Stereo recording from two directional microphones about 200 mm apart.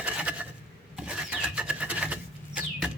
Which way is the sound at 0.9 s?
5° right (ahead or behind).